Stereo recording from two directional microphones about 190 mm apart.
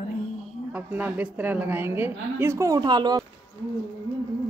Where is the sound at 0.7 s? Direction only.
10° right (ahead or behind).